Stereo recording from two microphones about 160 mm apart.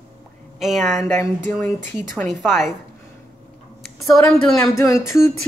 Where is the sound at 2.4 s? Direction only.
Centre (ahead or behind).